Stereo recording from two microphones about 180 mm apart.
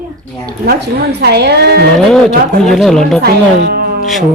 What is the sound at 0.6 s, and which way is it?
A woman's voice, 65° right (ahead or behind).